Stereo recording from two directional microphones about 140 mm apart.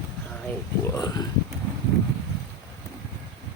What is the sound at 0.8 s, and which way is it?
Speech, 25° left (ahead or behind).